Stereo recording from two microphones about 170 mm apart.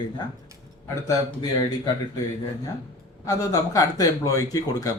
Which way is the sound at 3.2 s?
20° left (ahead or behind).